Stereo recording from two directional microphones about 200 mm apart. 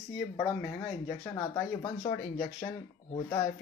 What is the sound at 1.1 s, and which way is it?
Speech, 15° left (ahead or behind).